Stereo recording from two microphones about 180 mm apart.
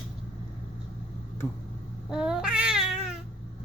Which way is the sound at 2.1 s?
5° right (ahead or behind).